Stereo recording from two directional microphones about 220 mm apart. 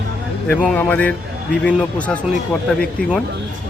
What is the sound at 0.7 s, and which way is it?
Speech, 5° left (ahead or behind).